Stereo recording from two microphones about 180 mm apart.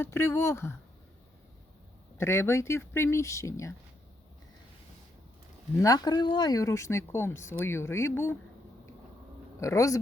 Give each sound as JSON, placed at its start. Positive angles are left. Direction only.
{"t": 0.0, "sound": "speech", "side_deg": 15}
{"t": 2.1, "sound": "speech", "side_deg": 15}
{"t": 5.8, "sound": "speech", "side_deg": 20}
{"t": 9.6, "sound": "speech", "side_deg": 15}